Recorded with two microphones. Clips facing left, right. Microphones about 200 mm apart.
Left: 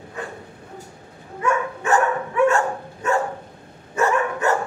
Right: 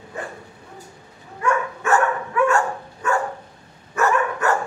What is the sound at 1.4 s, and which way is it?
Dog, 20° left (ahead or behind).